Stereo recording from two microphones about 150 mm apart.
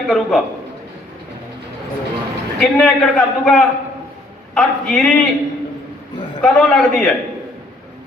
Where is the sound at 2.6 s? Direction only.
5° left (ahead or behind).